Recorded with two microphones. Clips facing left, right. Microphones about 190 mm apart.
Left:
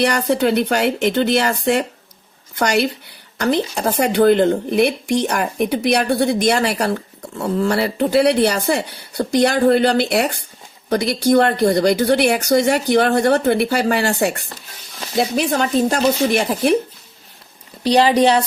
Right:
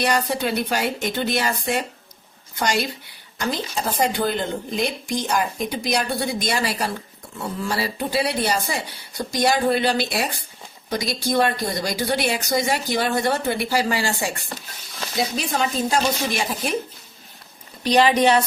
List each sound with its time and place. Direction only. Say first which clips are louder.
0.0 s speech: left 6 dB; 70° left (ahead or behind)
15.4 s speech: left 8 dB; 65° left (ahead or behind)
17.8 s a woman's voice: left 3 dB; 35° left (ahead or behind)